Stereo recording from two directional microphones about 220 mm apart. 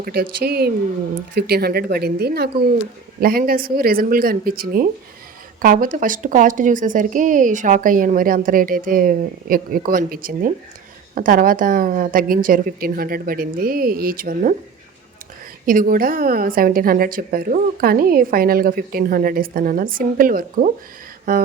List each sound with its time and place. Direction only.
0.0 s a woman's voice: 45° right (ahead or behind)
15.6 s a woman's voice: 40° right (ahead or behind)